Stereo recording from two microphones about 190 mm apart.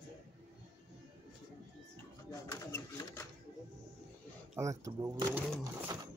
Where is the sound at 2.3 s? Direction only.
15° left (ahead or behind).